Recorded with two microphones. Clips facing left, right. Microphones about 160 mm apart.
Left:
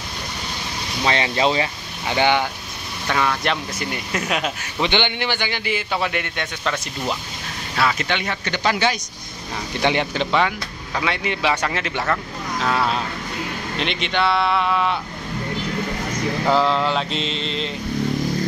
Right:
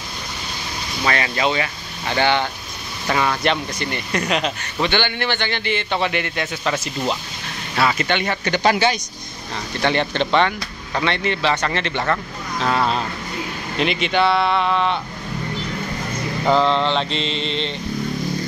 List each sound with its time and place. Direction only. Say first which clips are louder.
1.0 s speech: left 1 dB; 25° left (ahead or behind)
2.0 s a man's voice: even; 15° left (ahead or behind)
3.1 s a man's voice: right 2 dB; 5° right (ahead or behind)
4.8 s a man's voice: even; 15° left (ahead or behind); by 9.0 s centre (ahead or behind)
9.8 s a man's voice: right 1 dB; 15° left (ahead or behind)
16.4 s a man's voice: right 2 dB; 5° left (ahead or behind)